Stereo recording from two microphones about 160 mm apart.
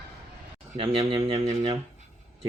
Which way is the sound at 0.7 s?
35° right (ahead or behind).